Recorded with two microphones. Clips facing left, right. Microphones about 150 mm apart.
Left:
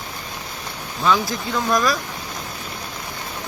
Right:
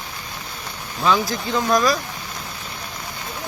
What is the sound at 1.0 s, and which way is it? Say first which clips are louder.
Speech: even; centre (ahead or behind).